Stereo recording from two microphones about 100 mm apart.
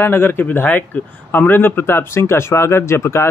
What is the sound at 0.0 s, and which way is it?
A man's voice, 25° left (ahead or behind).